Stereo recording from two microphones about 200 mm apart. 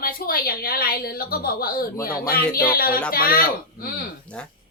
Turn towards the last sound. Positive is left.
turn(degrees=50)  # may be behind; listen again after turning